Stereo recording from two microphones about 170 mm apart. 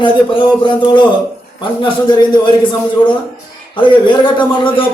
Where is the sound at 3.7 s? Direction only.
30° left (ahead or behind).